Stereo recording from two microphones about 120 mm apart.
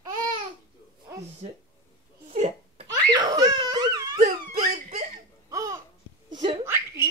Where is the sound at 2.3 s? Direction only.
65° right (ahead or behind).